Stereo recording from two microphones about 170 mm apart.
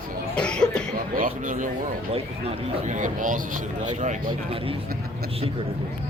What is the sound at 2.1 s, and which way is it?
Speech, 35° right (ahead or behind).